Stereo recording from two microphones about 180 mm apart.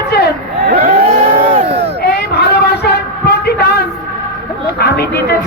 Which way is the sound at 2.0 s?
65° left (ahead or behind).